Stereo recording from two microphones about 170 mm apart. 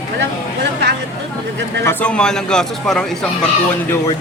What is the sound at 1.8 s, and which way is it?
A man's voice, 5° left (ahead or behind).